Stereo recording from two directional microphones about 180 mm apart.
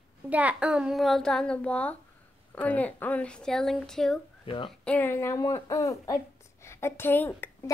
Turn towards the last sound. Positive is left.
turn(degrees=10)  # may be behind; listen again after turning